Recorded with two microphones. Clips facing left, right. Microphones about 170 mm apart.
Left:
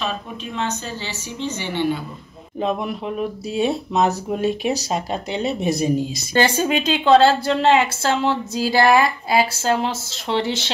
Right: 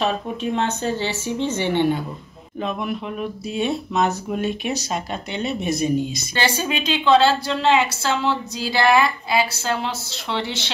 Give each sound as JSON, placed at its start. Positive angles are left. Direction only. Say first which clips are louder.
{"t": 0.0, "sound": "speech", "louder": "right 5 dB", "side_deg": -55}
{"t": 2.6, "sound": "speech", "louder": "left 3 dB", "side_deg": 35}